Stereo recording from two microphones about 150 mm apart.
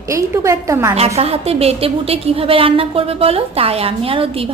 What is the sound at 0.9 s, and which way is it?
A woman's voice, 45° right (ahead or behind).